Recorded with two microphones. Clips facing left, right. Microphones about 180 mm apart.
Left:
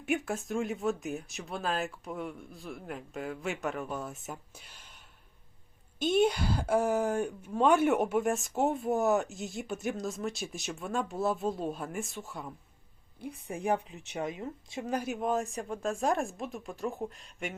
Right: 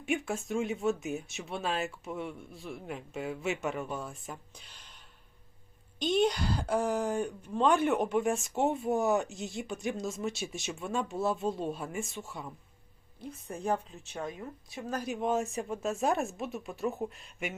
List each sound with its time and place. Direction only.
0.0 s speech: centre (ahead or behind)
6.0 s speech: 5° left (ahead or behind)
13.7 s speech: 15° left (ahead or behind)
15.0 s speech: centre (ahead or behind)